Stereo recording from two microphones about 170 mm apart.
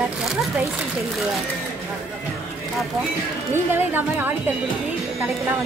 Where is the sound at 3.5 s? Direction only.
10° right (ahead or behind).